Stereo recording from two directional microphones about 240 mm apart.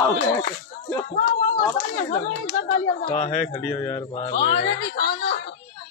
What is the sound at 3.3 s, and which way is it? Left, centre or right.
Speech, centre.